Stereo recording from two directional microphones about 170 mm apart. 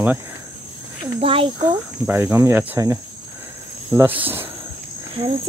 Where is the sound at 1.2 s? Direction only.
30° right (ahead or behind).